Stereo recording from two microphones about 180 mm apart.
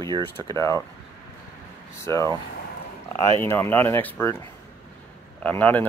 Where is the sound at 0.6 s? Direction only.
15° left (ahead or behind).